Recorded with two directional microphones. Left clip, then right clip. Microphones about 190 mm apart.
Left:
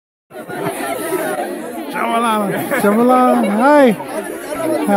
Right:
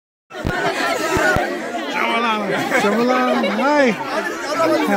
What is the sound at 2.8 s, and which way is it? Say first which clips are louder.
A man's voice: left 8 dB; 30° left (ahead or behind).